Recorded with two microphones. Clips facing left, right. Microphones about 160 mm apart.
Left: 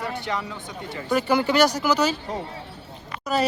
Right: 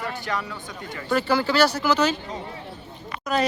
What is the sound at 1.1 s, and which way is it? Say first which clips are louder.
Speech: left 1 dB; 15° left (ahead or behind).